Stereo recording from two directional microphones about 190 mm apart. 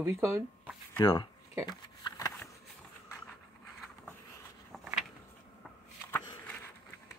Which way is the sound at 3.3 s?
Centre (ahead or behind).